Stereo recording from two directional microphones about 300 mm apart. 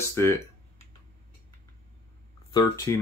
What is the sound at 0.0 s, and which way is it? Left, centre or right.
Computer keyboard, centre.